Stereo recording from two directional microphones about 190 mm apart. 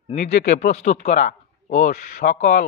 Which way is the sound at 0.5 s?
35° left (ahead or behind).